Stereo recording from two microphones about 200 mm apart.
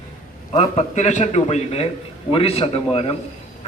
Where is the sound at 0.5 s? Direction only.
35° left (ahead or behind).